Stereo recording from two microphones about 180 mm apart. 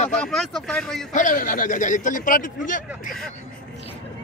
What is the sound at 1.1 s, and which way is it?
A man's voice, 50° left (ahead or behind).